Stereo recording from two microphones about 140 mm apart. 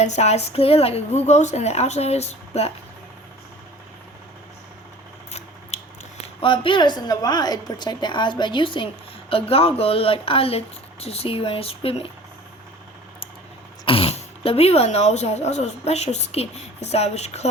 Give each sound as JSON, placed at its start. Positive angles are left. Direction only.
{"t": 0.0, "sound": "a woman's voice", "side_deg": 50}
{"t": 5.7, "sound": "biting", "side_deg": 50}
{"t": 6.4, "sound": "a woman's voice", "side_deg": 40}
{"t": 13.8, "sound": "speech", "side_deg": 40}